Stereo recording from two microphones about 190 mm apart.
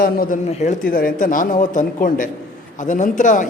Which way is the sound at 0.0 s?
45° left (ahead or behind).